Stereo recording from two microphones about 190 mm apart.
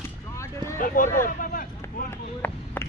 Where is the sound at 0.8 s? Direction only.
45° left (ahead or behind).